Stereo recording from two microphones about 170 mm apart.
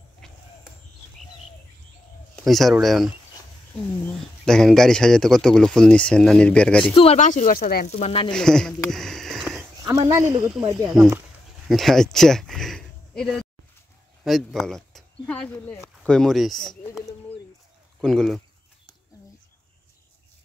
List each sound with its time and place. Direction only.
0.2 s a sound: centre (ahead or behind)
2.3 s speech: centre (ahead or behind)
4.5 s speech: 5° left (ahead or behind)
7.0 s speech: 40° left (ahead or behind)
8.3 s speech: 5° left (ahead or behind)
8.9 s a sound: centre (ahead or behind)
9.9 s speech: 20° right (ahead or behind)
10.9 s speech: centre (ahead or behind)
18.0 s speech: 5° left (ahead or behind)